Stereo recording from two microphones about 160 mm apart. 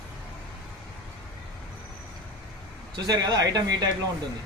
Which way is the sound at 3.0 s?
25° right (ahead or behind).